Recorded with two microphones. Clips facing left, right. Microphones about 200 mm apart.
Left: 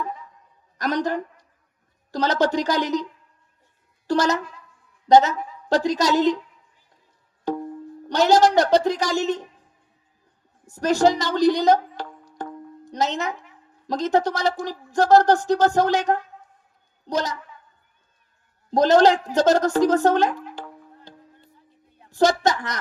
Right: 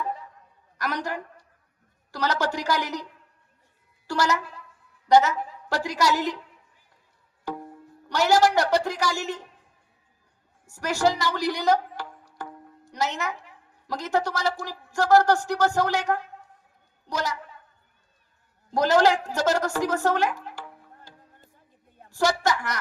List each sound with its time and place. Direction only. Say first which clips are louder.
0.8 s a sound: left 7 dB; 20° left (ahead or behind)
2.1 s a woman's voice: left 6 dB; 20° left (ahead or behind)
8.1 s speech: left 4 dB; 20° left (ahead or behind)
10.7 s a woman's voice: left 6 dB; 20° left (ahead or behind)
18.7 s speech: left 4 dB; 20° left (ahead or behind)
20.6 s music: left 4 dB; 20° left (ahead or behind)
22.1 s speech: left 5 dB; 20° left (ahead or behind)